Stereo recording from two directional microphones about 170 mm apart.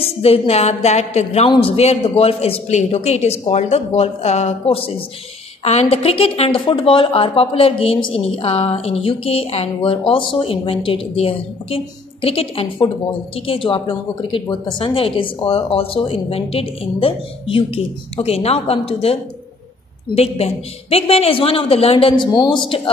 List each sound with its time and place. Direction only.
0.0 s a woman's voice: 35° left (ahead or behind)
20.2 s a woman's voice: 35° left (ahead or behind)